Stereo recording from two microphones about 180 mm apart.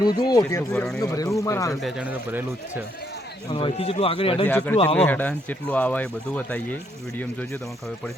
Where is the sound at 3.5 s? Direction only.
30° left (ahead or behind).